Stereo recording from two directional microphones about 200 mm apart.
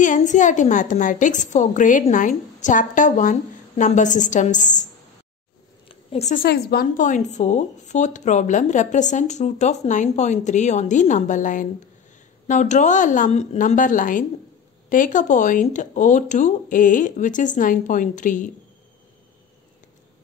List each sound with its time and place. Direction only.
0.0 s speech: 40° left (ahead or behind)
5.9 s a sound: 35° left (ahead or behind)
6.4 s speech: 50° left (ahead or behind)